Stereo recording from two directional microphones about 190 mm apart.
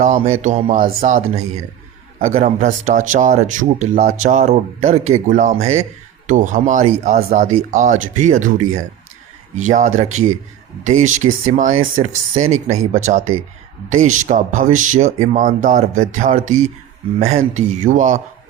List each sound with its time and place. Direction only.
0.0 s speech: 40° right (ahead or behind)